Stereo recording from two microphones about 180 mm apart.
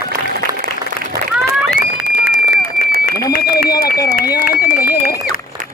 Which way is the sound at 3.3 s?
55° left (ahead or behind).